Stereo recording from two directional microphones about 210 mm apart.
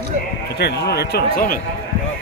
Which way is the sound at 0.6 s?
50° left (ahead or behind).